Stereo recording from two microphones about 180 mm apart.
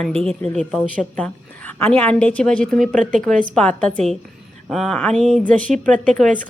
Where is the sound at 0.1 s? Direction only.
35° right (ahead or behind).